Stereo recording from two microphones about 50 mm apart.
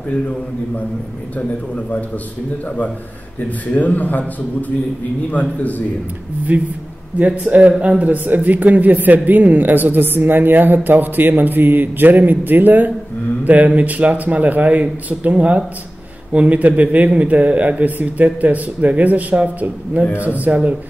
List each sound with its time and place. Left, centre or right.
3.7 s a man's voice: left
6.5 s a man's voice: right